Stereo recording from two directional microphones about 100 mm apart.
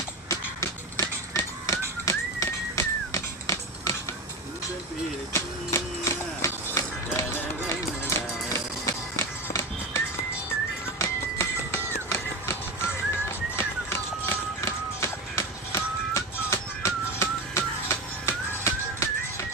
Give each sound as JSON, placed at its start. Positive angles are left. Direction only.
{"t": 0.3, "sound": "a sound", "side_deg": 30}
{"t": 2.0, "sound": "music", "side_deg": 30}
{"t": 5.3, "sound": "music", "side_deg": 30}
{"t": 8.5, "sound": "music", "side_deg": 30}